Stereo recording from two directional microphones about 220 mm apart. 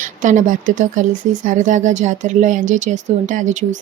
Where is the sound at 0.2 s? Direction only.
35° right (ahead or behind).